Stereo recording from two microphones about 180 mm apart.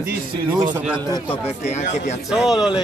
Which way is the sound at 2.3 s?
Centre (ahead or behind).